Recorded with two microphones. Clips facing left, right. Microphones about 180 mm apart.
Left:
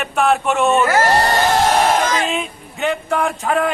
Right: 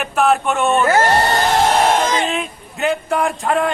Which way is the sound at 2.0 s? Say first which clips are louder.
Right 1 dB; 25° right (ahead or behind).